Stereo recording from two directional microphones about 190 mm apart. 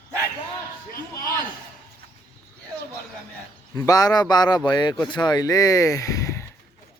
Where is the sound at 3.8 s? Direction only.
20° left (ahead or behind).